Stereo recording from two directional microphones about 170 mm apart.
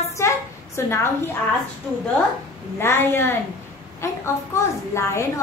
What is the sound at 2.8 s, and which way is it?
A woman's voice, 15° left (ahead or behind).